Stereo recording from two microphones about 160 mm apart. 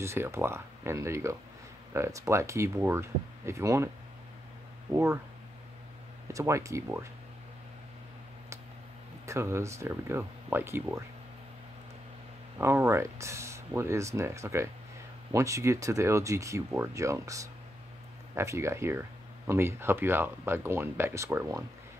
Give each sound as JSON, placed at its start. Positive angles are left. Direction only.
{"t": 0.0, "sound": "speech", "side_deg": -15}
{"t": 4.9, "sound": "speech", "side_deg": -15}
{"t": 6.2, "sound": "speech", "side_deg": -20}
{"t": 9.2, "sound": "speech", "side_deg": -15}
{"t": 12.5, "sound": "speech", "side_deg": -15}